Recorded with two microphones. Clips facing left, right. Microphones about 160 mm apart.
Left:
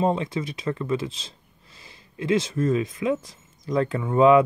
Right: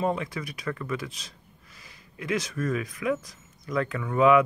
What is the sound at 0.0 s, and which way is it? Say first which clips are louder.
Speech: left 4 dB; 25° left (ahead or behind).